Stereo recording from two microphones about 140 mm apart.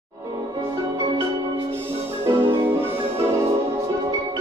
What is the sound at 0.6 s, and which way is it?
Music, 25° right (ahead or behind).